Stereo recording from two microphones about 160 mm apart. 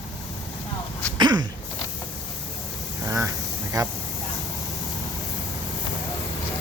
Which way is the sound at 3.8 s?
25° right (ahead or behind).